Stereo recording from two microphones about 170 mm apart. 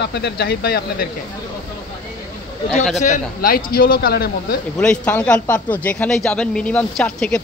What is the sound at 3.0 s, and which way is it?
Speech, 50° left (ahead or behind).